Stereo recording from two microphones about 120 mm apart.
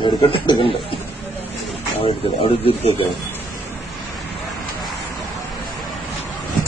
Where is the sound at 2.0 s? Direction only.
50° left (ahead or behind).